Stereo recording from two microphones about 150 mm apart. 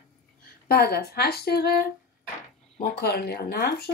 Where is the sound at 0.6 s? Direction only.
90° left.